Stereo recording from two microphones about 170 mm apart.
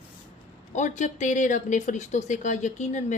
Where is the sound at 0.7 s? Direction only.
45° left (ahead or behind).